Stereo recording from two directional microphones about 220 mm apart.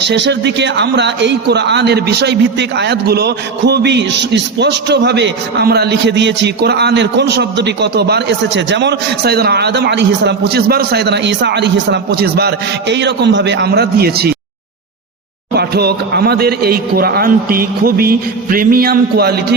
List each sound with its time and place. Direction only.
0.0 s speech: 50° right (ahead or behind)
15.5 s speech: 45° right (ahead or behind)